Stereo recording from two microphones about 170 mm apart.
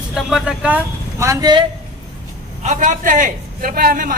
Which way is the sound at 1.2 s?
20° right (ahead or behind).